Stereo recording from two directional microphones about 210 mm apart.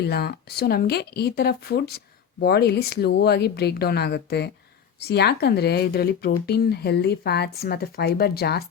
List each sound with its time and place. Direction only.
0.0 s speech: 50° left (ahead or behind)